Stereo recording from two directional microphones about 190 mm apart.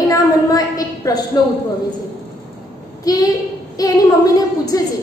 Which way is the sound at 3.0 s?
20° left (ahead or behind).